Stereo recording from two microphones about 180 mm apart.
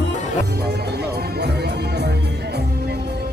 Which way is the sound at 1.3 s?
65° right (ahead or behind).